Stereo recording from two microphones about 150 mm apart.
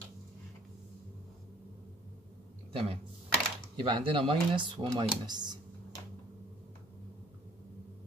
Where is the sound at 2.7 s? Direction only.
40° right (ahead or behind).